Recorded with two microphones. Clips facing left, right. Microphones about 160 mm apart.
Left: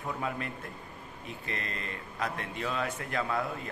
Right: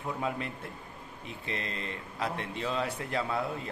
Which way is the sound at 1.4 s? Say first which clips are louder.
Right 2 dB; 25° right (ahead or behind).